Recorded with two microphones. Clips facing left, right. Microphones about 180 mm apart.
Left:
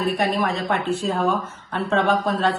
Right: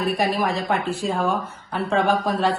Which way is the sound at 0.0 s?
Centre (ahead or behind).